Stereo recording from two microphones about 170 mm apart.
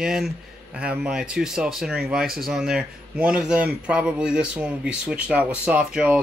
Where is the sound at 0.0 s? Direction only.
5° right (ahead or behind).